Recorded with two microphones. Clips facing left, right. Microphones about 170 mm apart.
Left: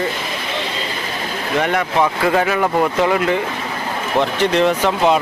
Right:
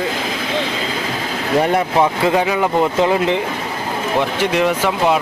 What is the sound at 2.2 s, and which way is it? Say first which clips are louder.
Speech: right 1 dB; 15° right (ahead or behind).